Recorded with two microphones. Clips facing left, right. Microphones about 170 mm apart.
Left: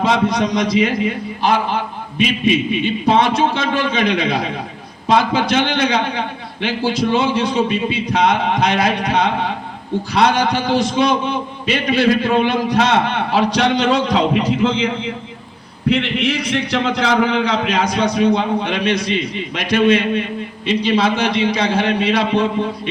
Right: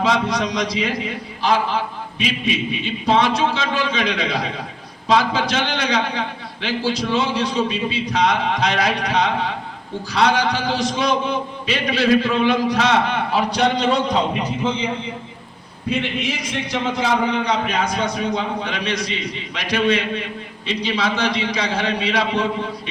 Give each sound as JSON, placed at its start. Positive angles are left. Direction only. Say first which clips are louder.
{"t": 0.0, "sound": "a man's voice", "louder": "left 3 dB", "side_deg": 50}
{"t": 13.5, "sound": "a man's voice", "louder": "left 3 dB", "side_deg": 85}
{"t": 15.9, "sound": "a man's voice", "louder": "left 5 dB", "side_deg": 70}